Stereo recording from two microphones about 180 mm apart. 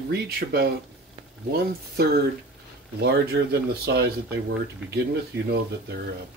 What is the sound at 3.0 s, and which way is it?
Speech, 65° right (ahead or behind).